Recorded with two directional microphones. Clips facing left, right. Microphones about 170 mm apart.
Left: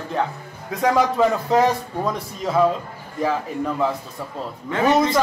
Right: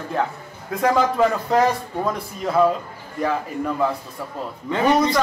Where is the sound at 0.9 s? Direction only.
Centre (ahead or behind).